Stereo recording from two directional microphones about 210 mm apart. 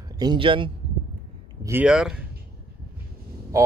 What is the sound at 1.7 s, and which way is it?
Speech, 5° right (ahead or behind).